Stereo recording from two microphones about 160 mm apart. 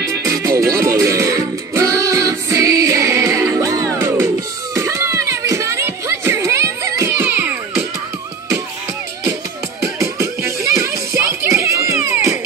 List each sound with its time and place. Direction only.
0.1 s music: 20° right (ahead or behind)
4.7 s a sound: 15° right (ahead or behind)
9.8 s music: 20° right (ahead or behind)